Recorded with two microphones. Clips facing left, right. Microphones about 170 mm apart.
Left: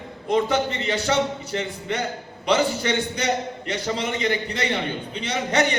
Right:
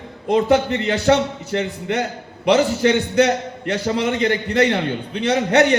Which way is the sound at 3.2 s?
70° right (ahead or behind).